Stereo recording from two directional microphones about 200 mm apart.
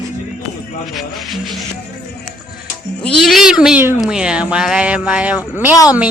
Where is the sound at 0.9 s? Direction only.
Centre (ahead or behind).